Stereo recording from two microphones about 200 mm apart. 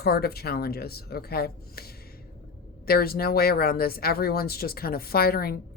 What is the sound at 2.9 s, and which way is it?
Speech, 50° left (ahead or behind).